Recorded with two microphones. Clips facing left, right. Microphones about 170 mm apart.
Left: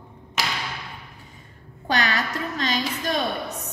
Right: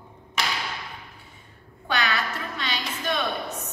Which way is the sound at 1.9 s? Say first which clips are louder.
Left 2 dB; 40° left (ahead or behind).